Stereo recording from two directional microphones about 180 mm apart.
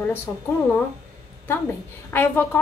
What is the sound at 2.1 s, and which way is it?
Speech, 10° left (ahead or behind).